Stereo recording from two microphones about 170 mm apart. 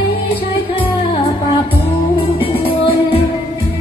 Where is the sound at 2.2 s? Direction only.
30° left (ahead or behind).